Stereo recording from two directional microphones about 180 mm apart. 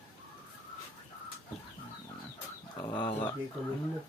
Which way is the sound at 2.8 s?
25° left (ahead or behind).